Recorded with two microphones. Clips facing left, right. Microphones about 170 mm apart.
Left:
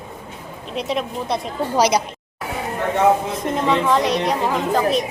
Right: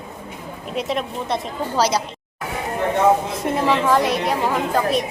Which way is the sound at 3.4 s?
5° right (ahead or behind).